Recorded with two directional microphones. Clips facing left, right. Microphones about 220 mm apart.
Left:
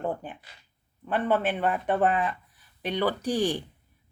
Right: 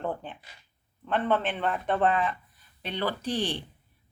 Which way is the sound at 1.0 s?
10° left (ahead or behind).